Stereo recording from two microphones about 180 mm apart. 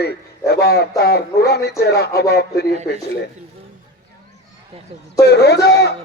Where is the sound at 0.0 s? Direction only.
65° left (ahead or behind).